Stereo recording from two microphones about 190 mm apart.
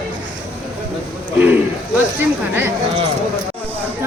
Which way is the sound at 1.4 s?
10° right (ahead or behind).